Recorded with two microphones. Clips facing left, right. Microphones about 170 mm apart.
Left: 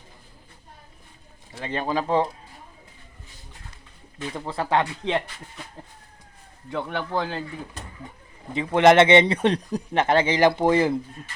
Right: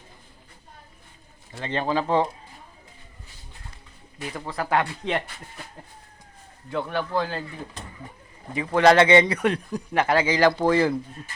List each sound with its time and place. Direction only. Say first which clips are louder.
1.5 s speech: right 1 dB; 10° left (ahead or behind)
4.4 s speech: left 1 dB; 25° left (ahead or behind)
6.7 s speech: right 1 dB; 20° left (ahead or behind)
8.5 s speech: left 1 dB; 20° left (ahead or behind)